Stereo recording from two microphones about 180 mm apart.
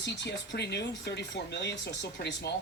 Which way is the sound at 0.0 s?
75° left (ahead or behind).